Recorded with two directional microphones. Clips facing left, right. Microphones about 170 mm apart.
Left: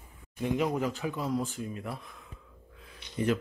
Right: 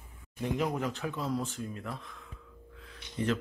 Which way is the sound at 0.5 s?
Centre (ahead or behind).